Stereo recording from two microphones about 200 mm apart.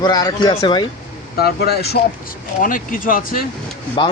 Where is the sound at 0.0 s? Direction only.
20° left (ahead or behind).